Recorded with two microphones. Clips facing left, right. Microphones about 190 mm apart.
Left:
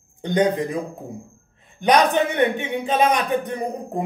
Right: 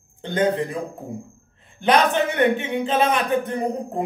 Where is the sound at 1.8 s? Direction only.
15° left (ahead or behind).